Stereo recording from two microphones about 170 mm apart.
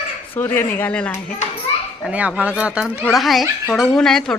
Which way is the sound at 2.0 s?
5° right (ahead or behind).